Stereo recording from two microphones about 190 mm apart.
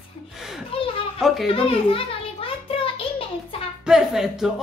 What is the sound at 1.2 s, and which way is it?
Speech, centre (ahead or behind).